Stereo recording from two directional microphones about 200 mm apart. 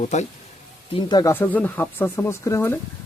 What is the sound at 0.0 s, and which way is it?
Speech, 35° left (ahead or behind).